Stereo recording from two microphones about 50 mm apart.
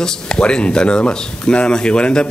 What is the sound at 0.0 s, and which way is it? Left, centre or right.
Speech, centre.